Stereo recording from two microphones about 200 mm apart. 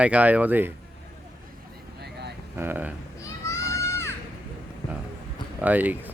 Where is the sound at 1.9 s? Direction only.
55° right (ahead or behind).